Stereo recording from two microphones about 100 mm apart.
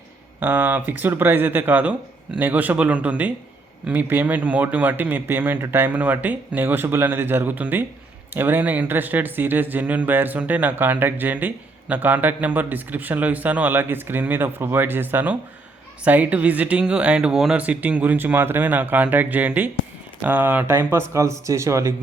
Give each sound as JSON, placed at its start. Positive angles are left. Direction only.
{"t": 0.3, "sound": "speech", "side_deg": -20}
{"t": 17.6, "sound": "speech", "side_deg": -15}